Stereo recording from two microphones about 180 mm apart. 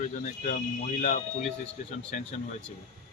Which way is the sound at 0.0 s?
45° left (ahead or behind).